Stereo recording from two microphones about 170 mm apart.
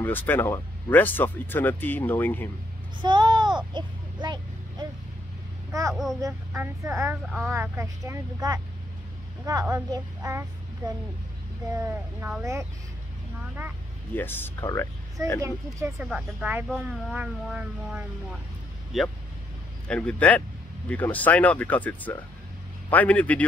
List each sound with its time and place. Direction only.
0.0 s speech: 10° left (ahead or behind)
3.0 s vehicle: 25° right (ahead or behind)
5.7 s a woman's voice: 20° right (ahead or behind)
11.7 s a woman's voice: 15° right (ahead or behind)
14.1 s speech: 10° left (ahead or behind)
15.4 s a woman's voice: 15° right (ahead or behind)
16.1 s a woman's voice: 5° right (ahead or behind)